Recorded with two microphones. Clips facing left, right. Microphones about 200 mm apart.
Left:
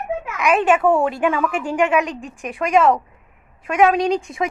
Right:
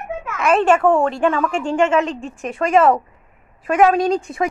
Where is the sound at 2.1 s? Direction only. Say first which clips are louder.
Right 3 dB; 30° right (ahead or behind).